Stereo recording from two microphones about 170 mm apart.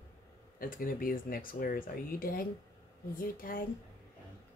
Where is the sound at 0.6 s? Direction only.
55° left (ahead or behind).